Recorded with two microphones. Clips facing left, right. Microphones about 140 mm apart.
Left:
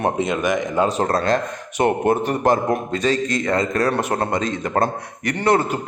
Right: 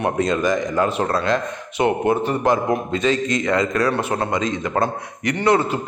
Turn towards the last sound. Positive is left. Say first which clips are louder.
# even
turn(degrees=45)  # may be behind; listen again after turning